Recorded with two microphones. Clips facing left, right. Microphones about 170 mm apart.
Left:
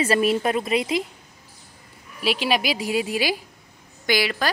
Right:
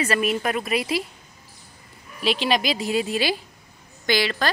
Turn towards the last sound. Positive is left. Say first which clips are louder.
# even
turn(degrees=10)  # may be behind; listen again after turning